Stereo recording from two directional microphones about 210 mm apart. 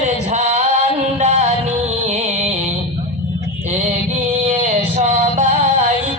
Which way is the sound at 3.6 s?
35° right (ahead or behind).